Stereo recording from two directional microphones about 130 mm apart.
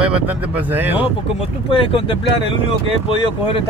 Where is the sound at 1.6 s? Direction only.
45° left (ahead or behind).